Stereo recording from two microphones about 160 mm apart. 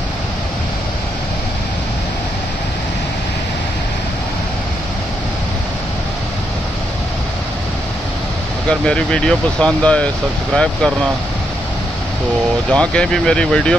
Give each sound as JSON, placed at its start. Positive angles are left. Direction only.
{"t": 8.6, "sound": "speech", "side_deg": 5}
{"t": 12.7, "sound": "speech", "side_deg": 5}